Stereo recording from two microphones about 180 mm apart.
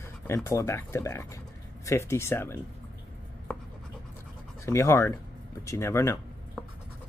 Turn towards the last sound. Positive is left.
turn(degrees=15)  # may be behind; listen again after turning